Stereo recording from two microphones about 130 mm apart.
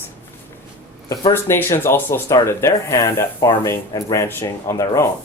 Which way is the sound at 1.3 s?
20° left (ahead or behind).